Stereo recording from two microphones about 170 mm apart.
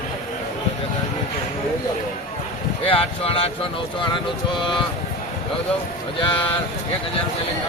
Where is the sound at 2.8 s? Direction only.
35° left (ahead or behind).